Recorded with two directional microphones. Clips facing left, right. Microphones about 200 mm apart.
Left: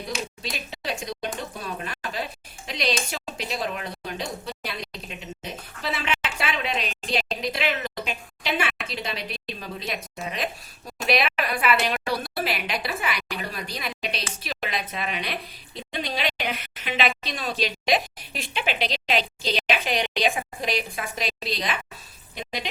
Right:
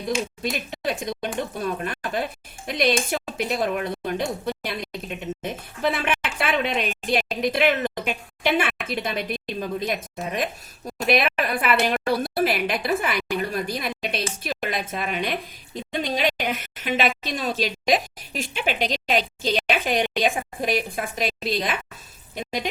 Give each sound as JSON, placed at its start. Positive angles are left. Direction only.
{"t": 0.4, "sound": "speech", "side_deg": -50}
{"t": 1.8, "sound": "a sound", "side_deg": -50}
{"t": 22.4, "sound": "speech", "side_deg": -45}